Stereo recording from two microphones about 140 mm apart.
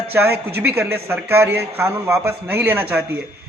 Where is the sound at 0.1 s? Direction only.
15° right (ahead or behind).